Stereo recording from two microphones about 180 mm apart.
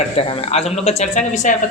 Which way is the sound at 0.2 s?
35° left (ahead or behind).